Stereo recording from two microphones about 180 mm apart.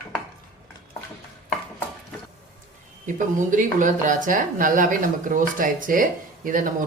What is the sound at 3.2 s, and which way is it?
Speech, 45° right (ahead or behind).